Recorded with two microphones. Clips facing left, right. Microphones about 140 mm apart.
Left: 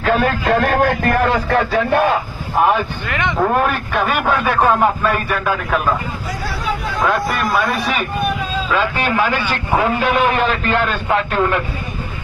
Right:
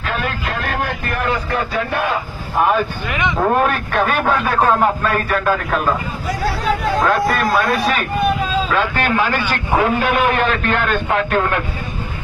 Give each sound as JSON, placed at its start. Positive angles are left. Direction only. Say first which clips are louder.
{"t": 0.0, "sound": "speech", "louder": "left 7 dB", "side_deg": 65}
{"t": 3.9, "sound": "speech", "louder": "even", "side_deg": 10}
{"t": 9.9, "sound": "a man's voice", "louder": "even", "side_deg": 0}